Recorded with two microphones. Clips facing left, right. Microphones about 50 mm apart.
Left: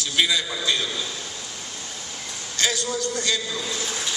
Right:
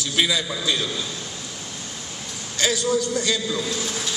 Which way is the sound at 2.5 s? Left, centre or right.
Centre.